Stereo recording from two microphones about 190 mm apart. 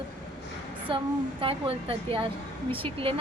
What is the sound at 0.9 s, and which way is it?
A woman's voice, 25° right (ahead or behind).